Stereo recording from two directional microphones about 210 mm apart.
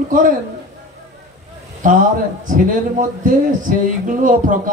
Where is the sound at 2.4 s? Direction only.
40° right (ahead or behind).